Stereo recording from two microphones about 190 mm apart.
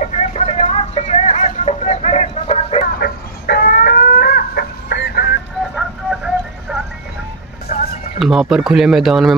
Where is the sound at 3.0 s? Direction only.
55° left (ahead or behind).